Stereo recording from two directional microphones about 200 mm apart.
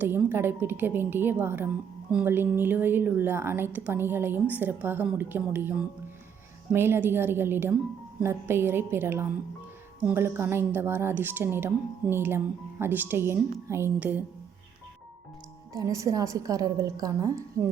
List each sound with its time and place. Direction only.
0.0 s a woman's voice: 10° right (ahead or behind)
15.7 s a woman's voice: 15° right (ahead or behind)